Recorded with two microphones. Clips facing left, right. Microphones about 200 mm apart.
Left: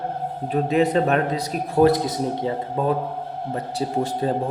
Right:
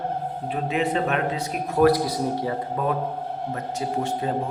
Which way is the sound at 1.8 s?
20° left (ahead or behind).